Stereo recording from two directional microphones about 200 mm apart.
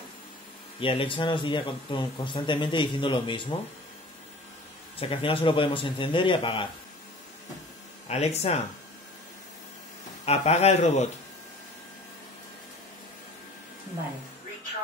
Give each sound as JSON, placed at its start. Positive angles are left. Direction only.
{"t": 0.7, "sound": "a man's voice", "side_deg": 25}
{"t": 4.9, "sound": "a man's voice", "side_deg": 25}
{"t": 8.1, "sound": "speech", "side_deg": 30}
{"t": 10.2, "sound": "speech", "side_deg": 30}